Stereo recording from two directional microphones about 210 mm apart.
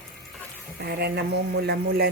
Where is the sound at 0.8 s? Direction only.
50° right (ahead or behind).